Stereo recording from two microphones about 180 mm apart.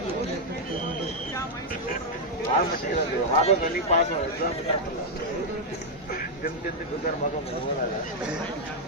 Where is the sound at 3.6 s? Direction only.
45° left (ahead or behind).